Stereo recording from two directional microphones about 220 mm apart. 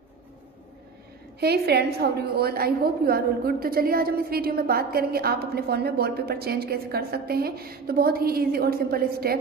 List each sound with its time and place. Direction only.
1.4 s a woman's voice: 45° right (ahead or behind)